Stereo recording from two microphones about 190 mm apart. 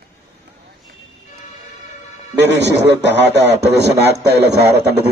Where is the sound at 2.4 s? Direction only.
65° right (ahead or behind).